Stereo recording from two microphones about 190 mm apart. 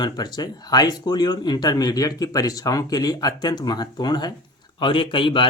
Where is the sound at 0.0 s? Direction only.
20° left (ahead or behind).